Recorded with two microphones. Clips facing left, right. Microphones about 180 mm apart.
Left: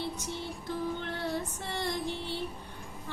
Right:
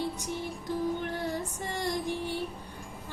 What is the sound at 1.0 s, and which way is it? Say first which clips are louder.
Female singing: right 1 dB; 15° right (ahead or behind).